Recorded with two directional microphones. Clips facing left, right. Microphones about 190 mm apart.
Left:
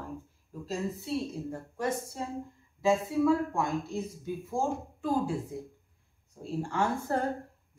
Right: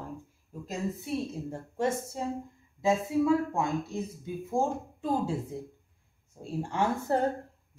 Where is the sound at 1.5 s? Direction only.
25° right (ahead or behind).